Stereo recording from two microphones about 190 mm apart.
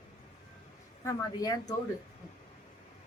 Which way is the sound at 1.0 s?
20° left (ahead or behind).